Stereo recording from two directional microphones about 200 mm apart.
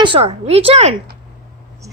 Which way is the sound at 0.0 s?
25° right (ahead or behind).